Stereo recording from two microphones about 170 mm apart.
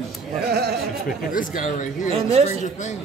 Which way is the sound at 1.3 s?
50° left (ahead or behind).